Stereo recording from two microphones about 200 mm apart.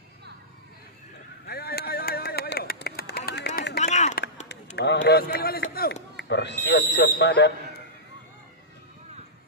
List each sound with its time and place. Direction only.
1.5 s a sound: 50° left (ahead or behind)
3.8 s run: 35° left (ahead or behind)
4.7 s speech: 60° left (ahead or behind)